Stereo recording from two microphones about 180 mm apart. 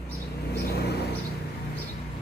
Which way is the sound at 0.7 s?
65° left (ahead or behind).